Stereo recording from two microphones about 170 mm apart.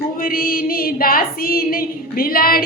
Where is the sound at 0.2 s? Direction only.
60° left (ahead or behind).